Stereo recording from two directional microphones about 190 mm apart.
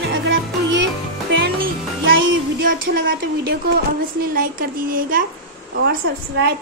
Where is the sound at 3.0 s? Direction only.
60° right (ahead or behind).